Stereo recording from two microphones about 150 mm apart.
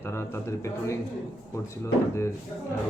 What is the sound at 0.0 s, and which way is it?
Speech, 15° left (ahead or behind).